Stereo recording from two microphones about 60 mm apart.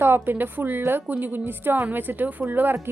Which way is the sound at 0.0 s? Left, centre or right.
Right.